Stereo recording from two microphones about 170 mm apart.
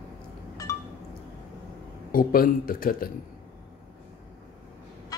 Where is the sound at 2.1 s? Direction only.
55° left (ahead or behind).